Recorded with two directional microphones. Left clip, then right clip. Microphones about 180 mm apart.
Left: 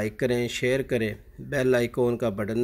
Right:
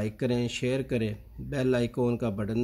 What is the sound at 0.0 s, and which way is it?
Speech, 10° left (ahead or behind).